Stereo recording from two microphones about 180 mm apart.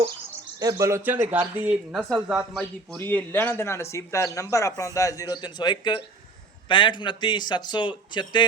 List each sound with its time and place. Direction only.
0.6 s speech: 20° right (ahead or behind); by 3.0 s centre (ahead or behind)
3.0 s a man's voice: 10° left (ahead or behind)